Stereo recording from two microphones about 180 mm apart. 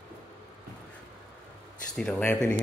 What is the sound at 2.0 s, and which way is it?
Speech, 5° left (ahead or behind).